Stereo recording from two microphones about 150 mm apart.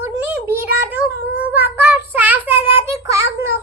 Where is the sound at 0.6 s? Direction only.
10° right (ahead or behind).